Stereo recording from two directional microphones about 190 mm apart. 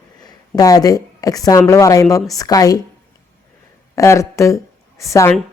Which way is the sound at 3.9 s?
15° left (ahead or behind).